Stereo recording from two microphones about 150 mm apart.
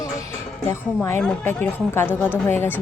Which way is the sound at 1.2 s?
10° left (ahead or behind).